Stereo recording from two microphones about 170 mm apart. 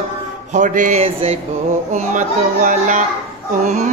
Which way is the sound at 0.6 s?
45° right (ahead or behind).